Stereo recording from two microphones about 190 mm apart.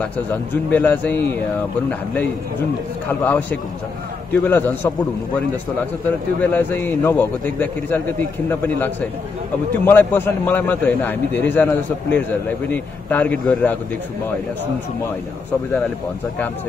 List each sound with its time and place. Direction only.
0.0 s a man's voice: 10° left (ahead or behind)
3.1 s a man's voice: 10° left (ahead or behind)
6.0 s a man's voice: 10° left (ahead or behind)